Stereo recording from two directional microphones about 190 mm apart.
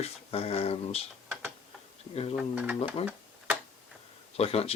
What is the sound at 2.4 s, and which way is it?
Speech, 10° right (ahead or behind).